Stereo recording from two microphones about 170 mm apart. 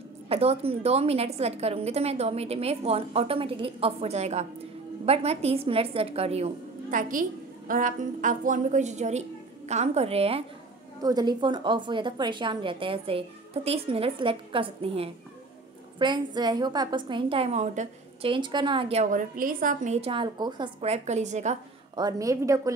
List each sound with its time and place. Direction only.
0.3 s a woman's voice: 35° right (ahead or behind)
11.0 s a woman's voice: 25° right (ahead or behind); by 18.3 s 40° right (ahead or behind)
18.3 s a woman's voice: 25° right (ahead or behind)
19.0 s a woman's voice: 55° right (ahead or behind)
21.9 s a woman's voice: 20° right (ahead or behind)